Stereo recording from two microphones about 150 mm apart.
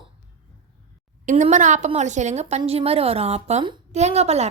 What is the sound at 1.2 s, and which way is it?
A woman's voice, 55° right (ahead or behind).